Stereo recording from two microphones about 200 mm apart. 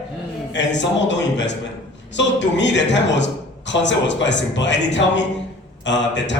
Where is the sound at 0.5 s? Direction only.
65° left (ahead or behind).